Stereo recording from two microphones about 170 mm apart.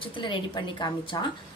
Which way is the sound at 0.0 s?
30° left (ahead or behind).